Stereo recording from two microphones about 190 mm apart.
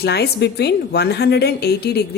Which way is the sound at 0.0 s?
60° left (ahead or behind).